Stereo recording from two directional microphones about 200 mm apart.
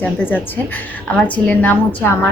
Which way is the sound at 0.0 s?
10° left (ahead or behind).